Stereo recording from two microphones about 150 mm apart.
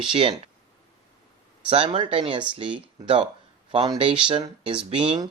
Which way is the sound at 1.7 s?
40° right (ahead or behind).